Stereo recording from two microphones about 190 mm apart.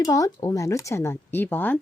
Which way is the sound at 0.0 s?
20° left (ahead or behind).